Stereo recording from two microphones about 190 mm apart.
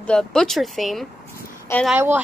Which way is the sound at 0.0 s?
5° left (ahead or behind).